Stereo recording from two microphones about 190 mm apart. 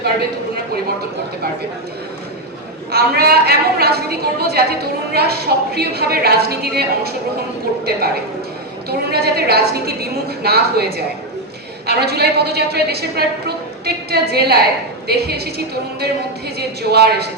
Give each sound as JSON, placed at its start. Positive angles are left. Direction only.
{"t": 2.9, "sound": "a woman's voice", "side_deg": -55}
{"t": 8.9, "sound": "a woman's voice", "side_deg": -55}